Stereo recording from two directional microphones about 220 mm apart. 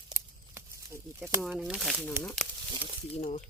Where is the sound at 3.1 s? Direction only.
30° left (ahead or behind).